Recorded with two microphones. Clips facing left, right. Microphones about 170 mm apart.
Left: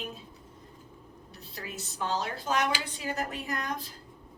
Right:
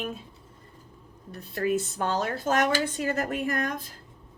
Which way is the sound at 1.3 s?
55° right (ahead or behind).